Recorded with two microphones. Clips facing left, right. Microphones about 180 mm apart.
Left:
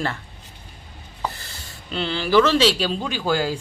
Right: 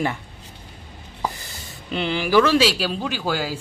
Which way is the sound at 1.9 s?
15° right (ahead or behind).